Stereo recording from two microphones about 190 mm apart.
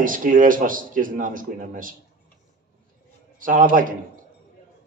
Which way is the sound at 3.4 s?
45° right (ahead or behind).